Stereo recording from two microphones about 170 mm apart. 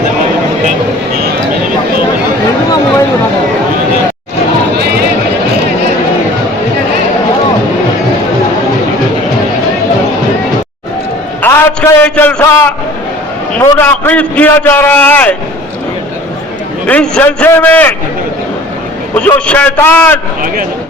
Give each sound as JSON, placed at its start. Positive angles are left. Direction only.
{"t": 11.4, "sound": "a man's voice", "side_deg": 15}
{"t": 16.8, "sound": "a man's voice", "side_deg": 5}
{"t": 19.1, "sound": "a man's voice", "side_deg": 5}